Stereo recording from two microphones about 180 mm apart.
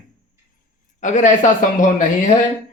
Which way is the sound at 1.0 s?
45° left (ahead or behind).